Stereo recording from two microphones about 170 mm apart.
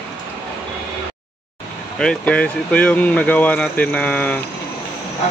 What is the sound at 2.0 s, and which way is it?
Speech, 5° left (ahead or behind).